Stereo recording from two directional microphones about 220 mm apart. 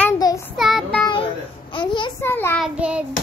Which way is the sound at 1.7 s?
20° left (ahead or behind).